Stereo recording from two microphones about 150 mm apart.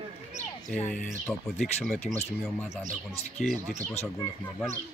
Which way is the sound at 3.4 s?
Centre (ahead or behind).